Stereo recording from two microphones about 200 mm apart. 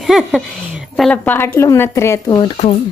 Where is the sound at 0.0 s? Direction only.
Centre (ahead or behind); by 2.5 s 20° left (ahead or behind).